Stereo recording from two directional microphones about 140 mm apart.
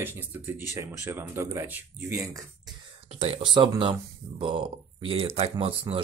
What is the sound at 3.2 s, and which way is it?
Speech, 35° right (ahead or behind).